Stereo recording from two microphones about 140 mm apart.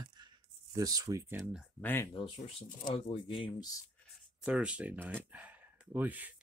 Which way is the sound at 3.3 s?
35° left (ahead or behind).